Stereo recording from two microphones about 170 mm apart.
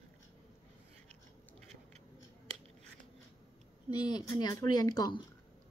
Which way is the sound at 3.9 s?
25° left (ahead or behind).